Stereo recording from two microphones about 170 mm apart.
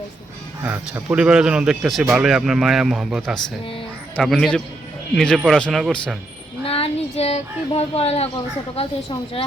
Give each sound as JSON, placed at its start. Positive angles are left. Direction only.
{"t": 0.6, "sound": "speech", "side_deg": -10}
{"t": 6.7, "sound": "a woman's voice", "side_deg": 35}